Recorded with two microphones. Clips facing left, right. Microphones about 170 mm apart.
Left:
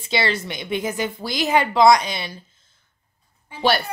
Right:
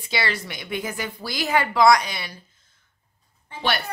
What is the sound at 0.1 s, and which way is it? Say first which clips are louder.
Speech: left 4 dB; 25° left (ahead or behind).